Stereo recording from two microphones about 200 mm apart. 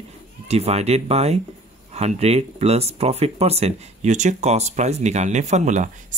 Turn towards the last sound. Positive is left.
turn(degrees=-35)  # may be behind; listen again after turning